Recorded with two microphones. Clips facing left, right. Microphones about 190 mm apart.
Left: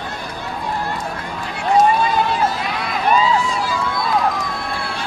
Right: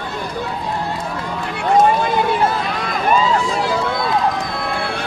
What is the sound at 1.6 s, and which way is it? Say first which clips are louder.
Run: right 1 dB; 55° right (ahead or behind).